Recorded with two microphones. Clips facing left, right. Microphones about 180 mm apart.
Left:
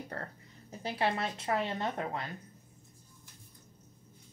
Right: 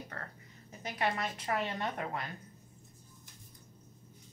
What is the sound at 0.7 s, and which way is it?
A woman's voice, 30° left (ahead or behind).